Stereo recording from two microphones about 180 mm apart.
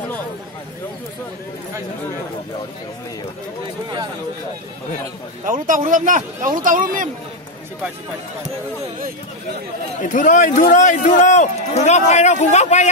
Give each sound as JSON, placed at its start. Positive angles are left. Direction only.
{"t": 5.4, "sound": "speech", "side_deg": -50}
{"t": 10.0, "sound": "a man's voice", "side_deg": 45}